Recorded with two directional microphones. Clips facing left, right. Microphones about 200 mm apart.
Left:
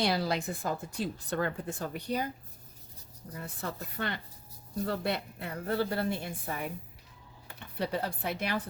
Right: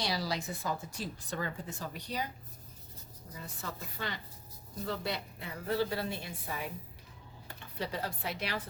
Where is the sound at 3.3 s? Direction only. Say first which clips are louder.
Left 5 dB; 55° left (ahead or behind).